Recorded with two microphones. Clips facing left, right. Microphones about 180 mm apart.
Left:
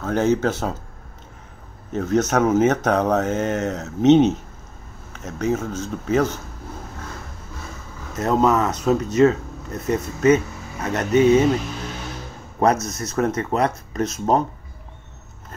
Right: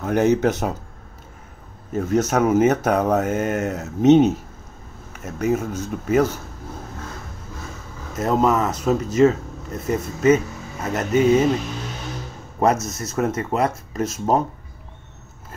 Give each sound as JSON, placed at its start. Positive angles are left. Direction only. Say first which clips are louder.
{"t": 0.0, "sound": "speech", "louder": "right 2 dB", "side_deg": -15}
{"t": 1.9, "sound": "speech", "louder": "even", "side_deg": -10}
{"t": 8.2, "sound": "speech", "louder": "left 1 dB", "side_deg": 0}
{"t": 11.1, "sound": "speech", "louder": "left 2 dB", "side_deg": 25}
{"t": 13.0, "sound": "speech", "louder": "left 2 dB", "side_deg": -5}